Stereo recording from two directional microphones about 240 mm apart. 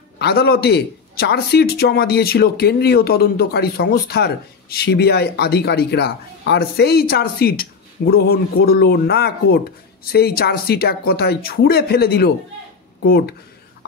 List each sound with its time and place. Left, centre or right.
0.2 s a man's voice: left